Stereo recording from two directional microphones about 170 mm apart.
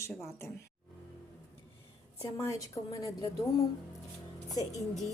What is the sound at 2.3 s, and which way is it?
Speech, 20° left (ahead or behind).